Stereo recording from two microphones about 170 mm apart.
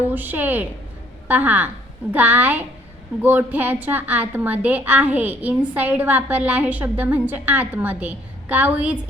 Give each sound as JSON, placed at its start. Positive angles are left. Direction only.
{"t": 0.0, "sound": "a woman's voice", "side_deg": -10}